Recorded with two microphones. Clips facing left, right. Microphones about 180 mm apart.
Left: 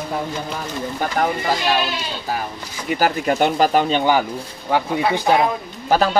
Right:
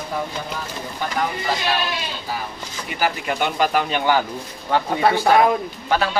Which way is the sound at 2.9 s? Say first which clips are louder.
Left 5 dB; 45° left (ahead or behind).